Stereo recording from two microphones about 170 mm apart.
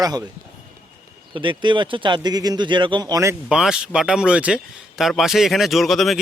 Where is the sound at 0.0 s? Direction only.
20° right (ahead or behind).